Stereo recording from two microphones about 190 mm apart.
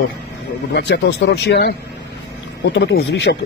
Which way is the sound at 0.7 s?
65° left (ahead or behind).